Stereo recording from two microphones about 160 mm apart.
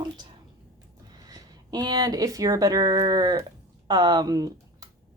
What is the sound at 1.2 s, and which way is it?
Speech, 25° right (ahead or behind).